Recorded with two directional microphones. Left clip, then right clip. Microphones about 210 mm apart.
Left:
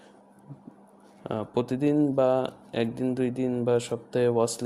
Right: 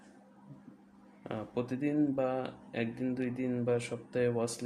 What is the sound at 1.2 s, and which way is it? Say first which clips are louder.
Speech: left 8 dB; 35° left (ahead or behind).